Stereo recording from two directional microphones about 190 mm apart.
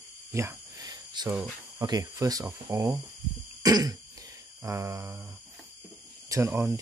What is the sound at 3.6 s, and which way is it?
Throat clearing, 20° right (ahead or behind).